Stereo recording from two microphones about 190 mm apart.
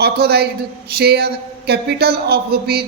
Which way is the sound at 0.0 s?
55° right (ahead or behind).